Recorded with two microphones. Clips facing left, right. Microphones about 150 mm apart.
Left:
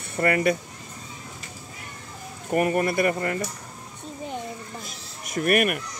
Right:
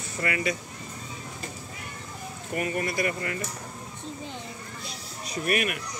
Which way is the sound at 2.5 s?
45° left (ahead or behind).